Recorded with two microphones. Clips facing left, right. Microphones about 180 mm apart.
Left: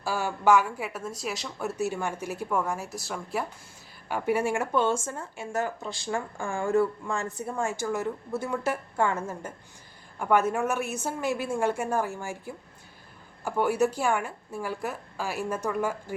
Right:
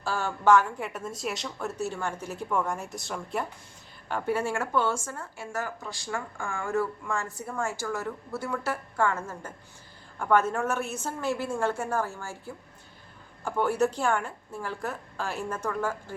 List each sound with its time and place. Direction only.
0.0 s a woman's voice: 10° left (ahead or behind)